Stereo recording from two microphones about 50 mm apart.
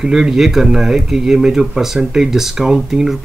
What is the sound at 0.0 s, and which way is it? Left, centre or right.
Speech, centre.